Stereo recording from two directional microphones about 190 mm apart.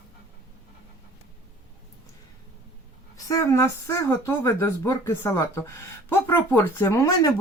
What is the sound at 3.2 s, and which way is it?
Speech, 15° left (ahead or behind).